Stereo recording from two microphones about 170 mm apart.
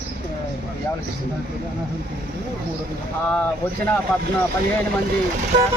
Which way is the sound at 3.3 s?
10° left (ahead or behind).